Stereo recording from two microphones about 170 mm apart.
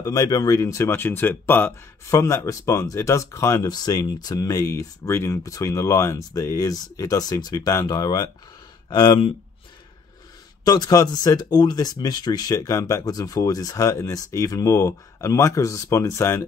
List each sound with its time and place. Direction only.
0.0 s speech: 20° left (ahead or behind)
10.6 s speech: 25° left (ahead or behind)